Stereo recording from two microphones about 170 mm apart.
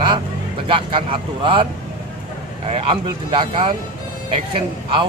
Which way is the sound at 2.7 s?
35° right (ahead or behind).